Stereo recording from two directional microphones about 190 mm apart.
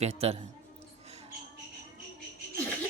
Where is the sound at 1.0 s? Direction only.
35° right (ahead or behind).